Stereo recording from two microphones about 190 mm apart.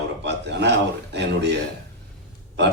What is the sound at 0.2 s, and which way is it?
Speech, 65° right (ahead or behind).